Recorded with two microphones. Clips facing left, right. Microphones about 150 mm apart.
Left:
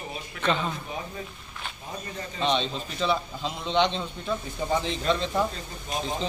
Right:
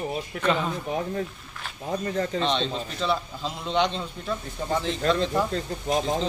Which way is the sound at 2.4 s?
5° left (ahead or behind).